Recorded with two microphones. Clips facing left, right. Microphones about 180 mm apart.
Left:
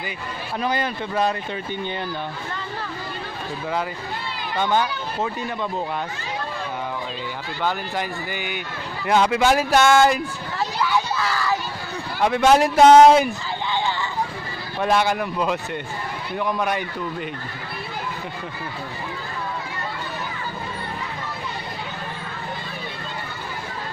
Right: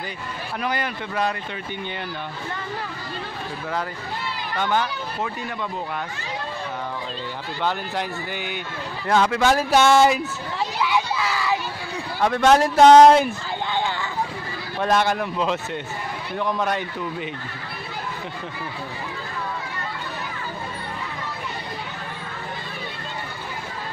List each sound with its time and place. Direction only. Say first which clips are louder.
0.6 s speech: left 3 dB; 30° left (ahead or behind)
4.6 s speech: left 2 dB; 20° left (ahead or behind)
7.6 s a man's voice: even; 5° left (ahead or behind)
9.0 s a man's voice: left 1 dB; 15° left (ahead or behind)
9.7 s a sound: right 1 dB; centre (ahead or behind)
12.2 s a man's voice: left 1 dB; 10° left (ahead or behind)
13.6 s a sound: even; 50° right (ahead or behind)
14.8 s a man's voice: even; 5° left (ahead or behind)